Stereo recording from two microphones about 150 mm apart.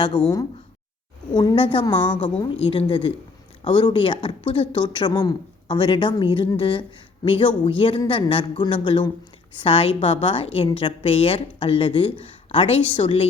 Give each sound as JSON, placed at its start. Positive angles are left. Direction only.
{"t": 0.1, "sound": "a woman's voice", "side_deg": 30}